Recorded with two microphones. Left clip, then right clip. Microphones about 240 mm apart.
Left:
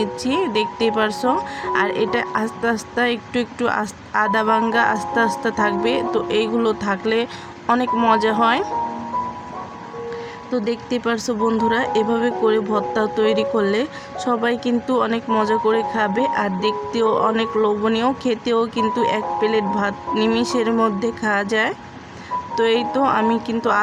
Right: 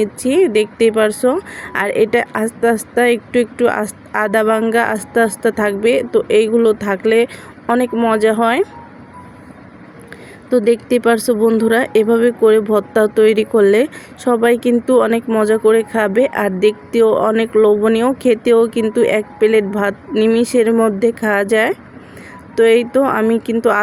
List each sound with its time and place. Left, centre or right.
0.0 s speech: centre
10.5 s speech: centre